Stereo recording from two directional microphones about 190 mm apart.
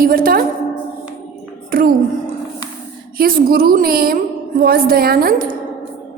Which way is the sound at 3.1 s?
50° right (ahead or behind).